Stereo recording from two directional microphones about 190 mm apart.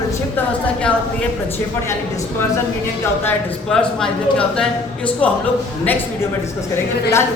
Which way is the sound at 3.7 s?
5° left (ahead or behind).